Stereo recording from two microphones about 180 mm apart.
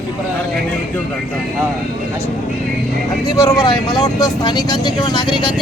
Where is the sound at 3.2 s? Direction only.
20° left (ahead or behind).